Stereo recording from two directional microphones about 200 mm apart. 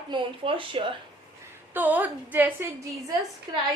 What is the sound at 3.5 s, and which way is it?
Speech, 20° right (ahead or behind).